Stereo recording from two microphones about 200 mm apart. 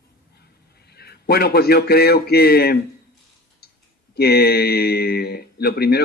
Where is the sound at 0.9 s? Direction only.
50° left (ahead or behind).